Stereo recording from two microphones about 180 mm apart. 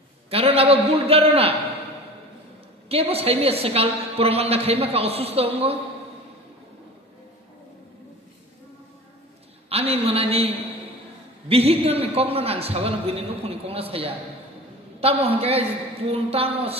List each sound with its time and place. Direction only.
0.3 s a woman's voice: 35° right (ahead or behind)
2.9 s a woman's voice: 35° right (ahead or behind)
9.7 s a woman's voice: 35° right (ahead or behind)